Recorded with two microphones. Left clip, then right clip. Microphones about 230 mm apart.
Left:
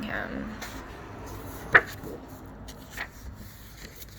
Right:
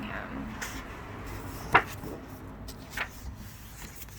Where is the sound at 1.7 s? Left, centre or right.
Centre.